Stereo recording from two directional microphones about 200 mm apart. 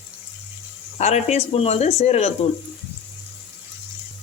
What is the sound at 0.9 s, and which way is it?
Speech, 35° left (ahead or behind).